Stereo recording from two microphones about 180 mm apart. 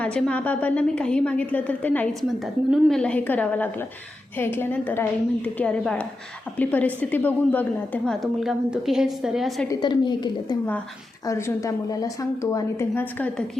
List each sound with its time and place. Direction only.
0.0 s a woman's voice: 5° left (ahead or behind)
9.6 s a woman's voice: 25° left (ahead or behind); by 13.4 s 10° left (ahead or behind)